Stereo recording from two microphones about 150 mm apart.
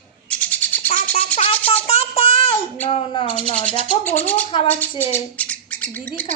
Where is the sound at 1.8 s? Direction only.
45° left (ahead or behind).